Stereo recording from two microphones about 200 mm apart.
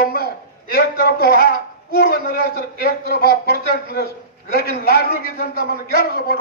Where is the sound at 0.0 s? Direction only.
50° left (ahead or behind).